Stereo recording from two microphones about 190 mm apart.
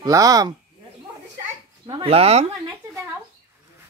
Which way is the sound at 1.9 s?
30° right (ahead or behind).